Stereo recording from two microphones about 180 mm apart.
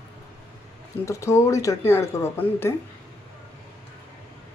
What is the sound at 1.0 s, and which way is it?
Speech, 15° left (ahead or behind).